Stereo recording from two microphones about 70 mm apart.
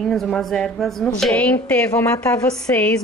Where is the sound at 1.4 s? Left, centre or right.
Left.